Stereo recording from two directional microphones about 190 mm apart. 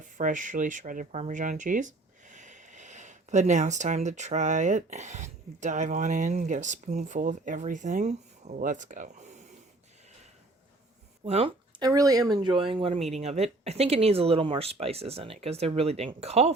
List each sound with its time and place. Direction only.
0.2 s speech: 45° right (ahead or behind)
11.3 s speech: 35° right (ahead or behind)
11.8 s speech: 20° right (ahead or behind)